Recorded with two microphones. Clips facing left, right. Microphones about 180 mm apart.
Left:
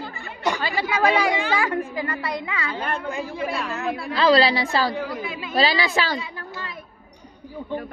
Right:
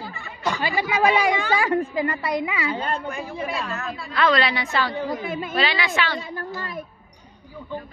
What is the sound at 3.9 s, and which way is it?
Speech, 65° left (ahead or behind).